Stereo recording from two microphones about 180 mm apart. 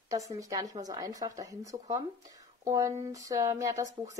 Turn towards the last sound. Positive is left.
turn(degrees=-15)  # may be behind; listen again after turning